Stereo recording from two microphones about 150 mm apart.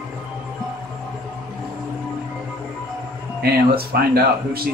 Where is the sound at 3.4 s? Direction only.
90° right.